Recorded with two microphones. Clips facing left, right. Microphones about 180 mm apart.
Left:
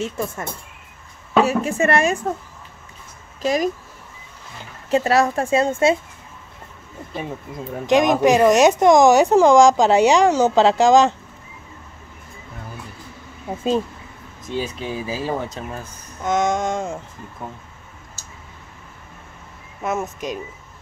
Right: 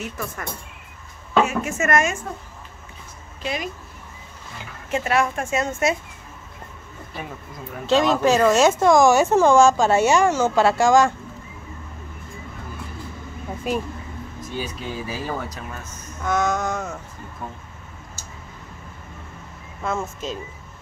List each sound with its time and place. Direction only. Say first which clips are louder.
0.0 s speech: left 5 dB; 25° left (ahead or behind)
3.4 s speech: left 8 dB; 40° left (ahead or behind)
4.9 s speech: left 5 dB; 35° left (ahead or behind)
7.8 s speech: left 3 dB; 15° left (ahead or behind)
14.5 s speech: left 5 dB; 25° left (ahead or behind)
19.8 s speech: left 2 dB; 20° left (ahead or behind)